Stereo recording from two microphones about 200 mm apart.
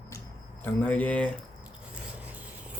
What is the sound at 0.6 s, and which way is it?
Speech, 5° left (ahead or behind).